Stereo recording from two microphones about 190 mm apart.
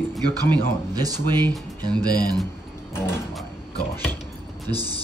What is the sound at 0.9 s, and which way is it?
Speech, 20° right (ahead or behind).